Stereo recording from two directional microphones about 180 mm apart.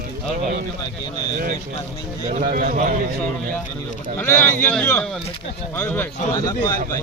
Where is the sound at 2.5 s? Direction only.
50° right (ahead or behind).